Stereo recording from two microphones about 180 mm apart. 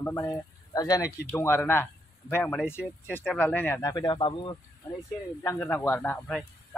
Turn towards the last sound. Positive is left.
turn(degrees=10)  # may be behind; listen again after turning